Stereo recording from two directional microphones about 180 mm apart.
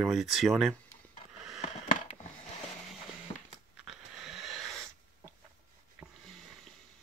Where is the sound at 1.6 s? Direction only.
35° left (ahead or behind).